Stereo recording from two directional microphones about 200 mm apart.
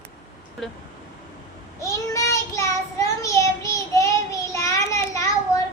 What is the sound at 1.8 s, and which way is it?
Child singing, 15° left (ahead or behind).